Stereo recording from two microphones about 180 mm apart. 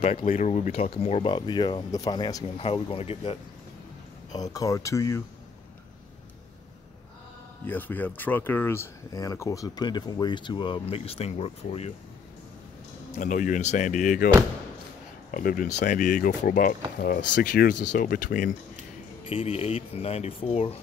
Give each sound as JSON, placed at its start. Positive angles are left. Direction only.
{"t": 0.0, "sound": "speech", "side_deg": 35}
{"t": 4.3, "sound": "speech", "side_deg": 20}
{"t": 7.6, "sound": "speech", "side_deg": 10}
{"t": 13.1, "sound": "speech", "side_deg": 45}
{"t": 15.3, "sound": "speech", "side_deg": 50}
{"t": 19.2, "sound": "speech", "side_deg": 30}